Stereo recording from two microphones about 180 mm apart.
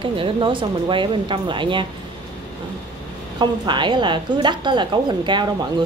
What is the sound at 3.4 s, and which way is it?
A woman's voice, 25° right (ahead or behind).